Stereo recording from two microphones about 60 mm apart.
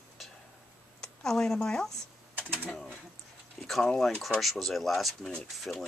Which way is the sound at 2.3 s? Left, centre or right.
Right.